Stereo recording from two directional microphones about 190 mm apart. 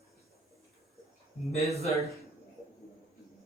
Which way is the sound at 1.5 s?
35° left (ahead or behind).